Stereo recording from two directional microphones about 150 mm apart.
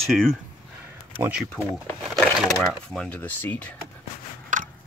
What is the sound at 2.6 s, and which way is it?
Speech, centre (ahead or behind).